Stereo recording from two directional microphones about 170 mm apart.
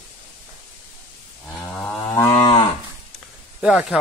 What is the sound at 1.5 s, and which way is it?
Cattle, 10° left (ahead or behind).